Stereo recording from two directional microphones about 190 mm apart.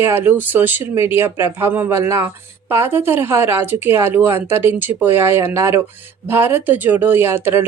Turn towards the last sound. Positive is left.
turn(degrees=-10)  # may be behind; listen again after turning